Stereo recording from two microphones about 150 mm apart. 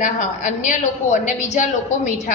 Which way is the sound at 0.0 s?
55° left (ahead or behind).